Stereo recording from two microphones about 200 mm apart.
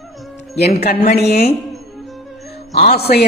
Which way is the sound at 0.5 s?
50° left (ahead or behind).